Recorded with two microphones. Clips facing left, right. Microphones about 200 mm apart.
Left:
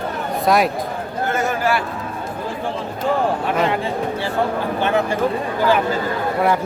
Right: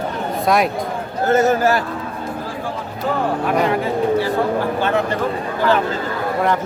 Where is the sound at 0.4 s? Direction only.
Centre (ahead or behind).